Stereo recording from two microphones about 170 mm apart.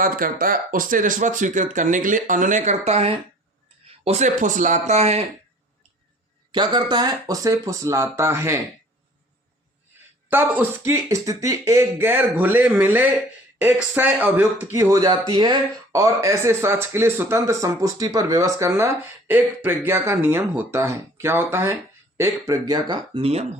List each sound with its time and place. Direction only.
0.0 s speech: 55° right (ahead or behind); by 5.2 s 40° right (ahead or behind)
6.5 s speech: 25° right (ahead or behind)
10.2 s speech: 10° right (ahead or behind); by 23.5 s 35° right (ahead or behind)